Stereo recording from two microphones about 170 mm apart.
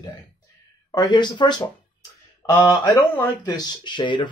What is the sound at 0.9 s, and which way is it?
Speech, 25° left (ahead or behind).